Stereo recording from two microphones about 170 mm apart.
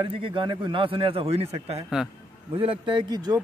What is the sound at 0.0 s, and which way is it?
A man's voice, 30° right (ahead or behind).